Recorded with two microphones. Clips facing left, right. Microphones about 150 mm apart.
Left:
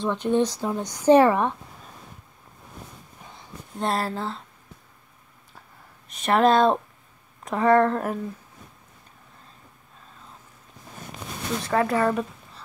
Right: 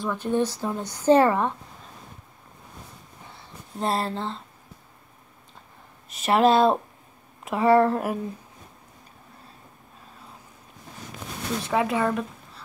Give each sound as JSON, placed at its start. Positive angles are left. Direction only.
{"t": 0.0, "sound": "a woman's voice", "side_deg": 20}
{"t": 3.8, "sound": "speech", "side_deg": 0}
{"t": 6.1, "sound": "speech", "side_deg": -5}
{"t": 11.6, "sound": "speech", "side_deg": -5}